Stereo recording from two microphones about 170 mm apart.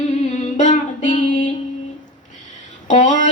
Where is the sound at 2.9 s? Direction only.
45° left (ahead or behind).